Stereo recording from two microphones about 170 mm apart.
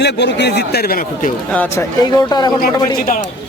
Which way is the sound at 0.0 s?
90° left.